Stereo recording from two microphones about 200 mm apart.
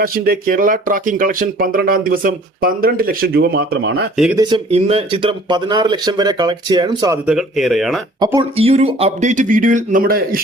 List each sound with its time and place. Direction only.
0.0 s speech: 45° right (ahead or behind)
4.4 s speech: 20° right (ahead or behind)
7.3 s speech: centre (ahead or behind)
8.2 s speech: 20° right (ahead or behind); by 10.4 s 45° right (ahead or behind)